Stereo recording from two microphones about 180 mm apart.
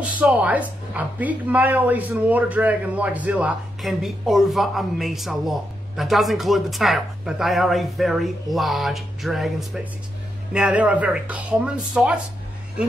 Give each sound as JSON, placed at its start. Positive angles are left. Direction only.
{"t": 0.0, "sound": "a woman's voice", "side_deg": -5}